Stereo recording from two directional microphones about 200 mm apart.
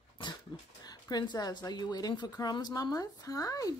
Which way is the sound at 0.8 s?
20° left (ahead or behind).